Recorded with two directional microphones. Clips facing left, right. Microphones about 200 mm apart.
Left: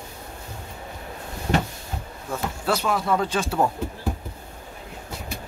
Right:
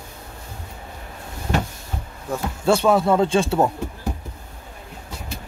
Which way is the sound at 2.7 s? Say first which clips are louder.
Right 7 dB; 30° right (ahead or behind).